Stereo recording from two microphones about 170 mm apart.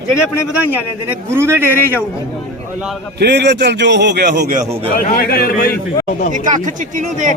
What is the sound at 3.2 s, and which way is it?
A man's voice, 85° right.